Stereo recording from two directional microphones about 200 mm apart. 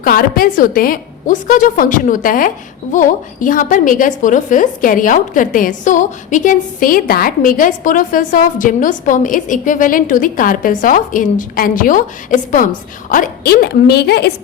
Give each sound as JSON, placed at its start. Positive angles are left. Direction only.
{"t": 0.0, "sound": "a woman's voice", "side_deg": 45}